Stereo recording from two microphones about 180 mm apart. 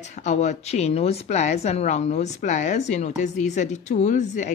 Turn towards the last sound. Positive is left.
turn(degrees=40)  # may be behind; listen again after turning